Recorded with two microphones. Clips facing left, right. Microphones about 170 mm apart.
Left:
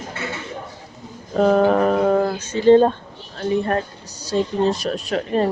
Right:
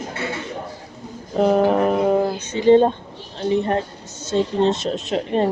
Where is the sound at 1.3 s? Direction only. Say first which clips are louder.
Left 1 dB; 15° right (ahead or behind).